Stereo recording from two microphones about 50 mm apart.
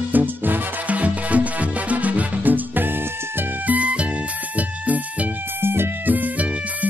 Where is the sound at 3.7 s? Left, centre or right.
Right.